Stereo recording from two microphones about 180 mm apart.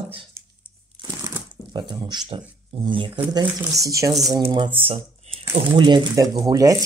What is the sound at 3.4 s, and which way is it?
Speech, 15° right (ahead or behind).